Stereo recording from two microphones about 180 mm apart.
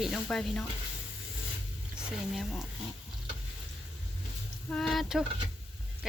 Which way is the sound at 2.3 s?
Centre (ahead or behind).